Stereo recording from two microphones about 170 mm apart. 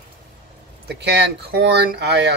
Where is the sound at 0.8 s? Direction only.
75° right (ahead or behind).